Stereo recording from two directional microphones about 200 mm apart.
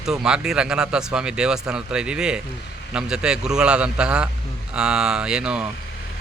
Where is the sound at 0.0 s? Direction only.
Centre (ahead or behind).